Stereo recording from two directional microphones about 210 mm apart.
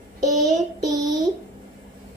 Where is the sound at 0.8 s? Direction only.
15° right (ahead or behind).